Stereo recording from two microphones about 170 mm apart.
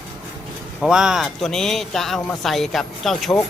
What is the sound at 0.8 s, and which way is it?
A man's voice, 5° right (ahead or behind).